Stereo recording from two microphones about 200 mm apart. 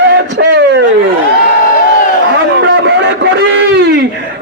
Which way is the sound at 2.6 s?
60° right (ahead or behind).